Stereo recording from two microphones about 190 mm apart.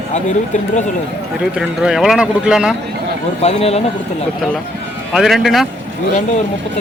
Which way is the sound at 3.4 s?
35° left (ahead or behind).